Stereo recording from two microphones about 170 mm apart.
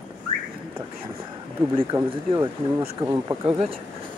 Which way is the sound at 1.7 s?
30° right (ahead or behind).